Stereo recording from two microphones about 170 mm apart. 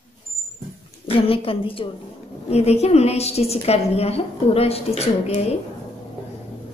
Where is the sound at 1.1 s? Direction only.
35° left (ahead or behind).